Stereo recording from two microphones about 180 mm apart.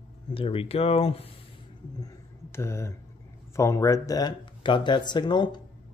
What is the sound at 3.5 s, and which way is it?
Speech, 15° left (ahead or behind).